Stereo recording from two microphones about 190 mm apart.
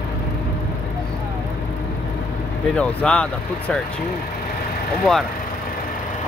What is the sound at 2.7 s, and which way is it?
Speech, 5° left (ahead or behind).